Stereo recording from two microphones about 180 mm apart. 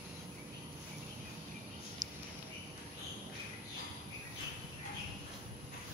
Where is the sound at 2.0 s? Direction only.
20° right (ahead or behind).